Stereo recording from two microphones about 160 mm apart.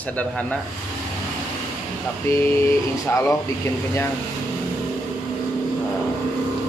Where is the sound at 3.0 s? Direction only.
20° left (ahead or behind).